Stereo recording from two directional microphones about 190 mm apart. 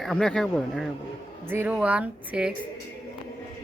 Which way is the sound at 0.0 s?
Centre (ahead or behind).